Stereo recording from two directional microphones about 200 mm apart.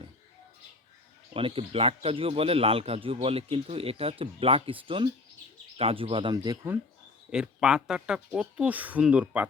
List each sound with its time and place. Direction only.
1.3 s speech: 25° right (ahead or behind)
7.3 s speech: 5° right (ahead or behind)